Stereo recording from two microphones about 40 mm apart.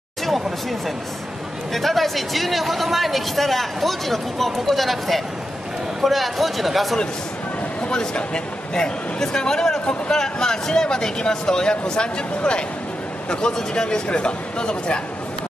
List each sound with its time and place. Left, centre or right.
0.3 s speech: centre
7.9 s a man's voice: centre